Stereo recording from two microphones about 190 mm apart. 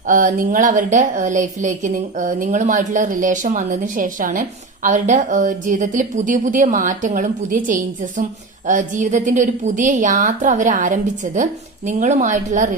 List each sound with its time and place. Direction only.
0.1 s a woman's voice: 45° right (ahead or behind)